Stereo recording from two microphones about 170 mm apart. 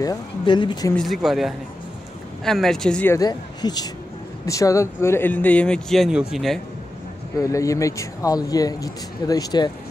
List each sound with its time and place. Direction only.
0.0 s speech: 25° left (ahead or behind)
0.9 s speech: centre (ahead or behind)
3.2 s speech: 25° left (ahead or behind); by 6.6 s centre (ahead or behind)
7.4 s speech: 20° left (ahead or behind)